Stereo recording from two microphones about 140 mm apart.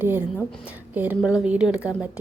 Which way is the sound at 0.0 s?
15° right (ahead or behind).